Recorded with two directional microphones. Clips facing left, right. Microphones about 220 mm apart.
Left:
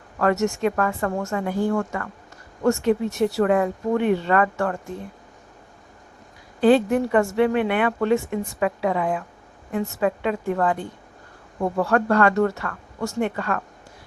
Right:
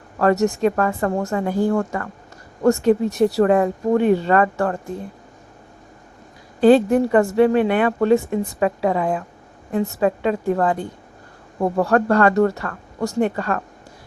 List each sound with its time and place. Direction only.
0.2 s a woman's voice: 35° right (ahead or behind)
6.6 s a woman's voice: 40° right (ahead or behind)